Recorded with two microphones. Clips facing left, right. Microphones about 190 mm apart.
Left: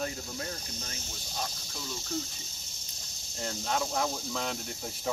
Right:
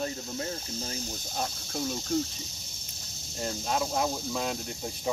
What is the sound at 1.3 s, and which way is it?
Speech, 50° right (ahead or behind).